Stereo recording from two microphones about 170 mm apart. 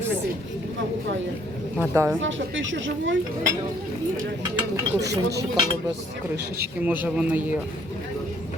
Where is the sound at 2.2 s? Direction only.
90° right.